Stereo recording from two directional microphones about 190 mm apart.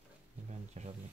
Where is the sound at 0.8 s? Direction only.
35° right (ahead or behind).